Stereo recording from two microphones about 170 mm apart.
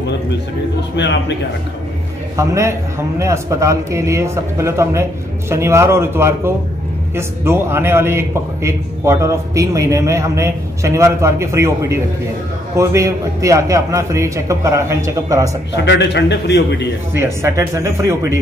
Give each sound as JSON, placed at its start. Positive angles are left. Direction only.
{"t": 1.0, "sound": "a man's voice", "side_deg": 90}
{"t": 2.3, "sound": "a man's voice", "side_deg": -20}
{"t": 15.7, "sound": "a man's voice", "side_deg": 90}
{"t": 17.1, "sound": "a man's voice", "side_deg": -15}